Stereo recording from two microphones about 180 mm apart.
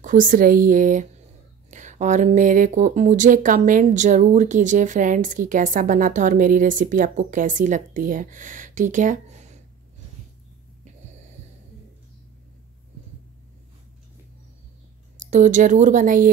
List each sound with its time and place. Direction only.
0.0 s speech: 50° right (ahead or behind)
15.1 s speech: 45° right (ahead or behind)